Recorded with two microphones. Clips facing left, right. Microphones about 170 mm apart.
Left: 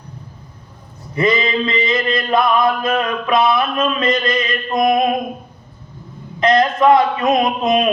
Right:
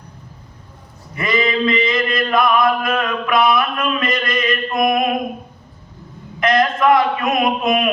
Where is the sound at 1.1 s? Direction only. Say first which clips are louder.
Left 2 dB; 25° left (ahead or behind).